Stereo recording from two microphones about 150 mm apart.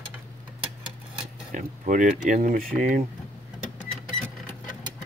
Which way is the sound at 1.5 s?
60° right (ahead or behind).